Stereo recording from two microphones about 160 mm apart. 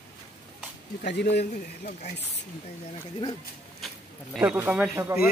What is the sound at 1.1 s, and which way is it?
Speech, 90° left.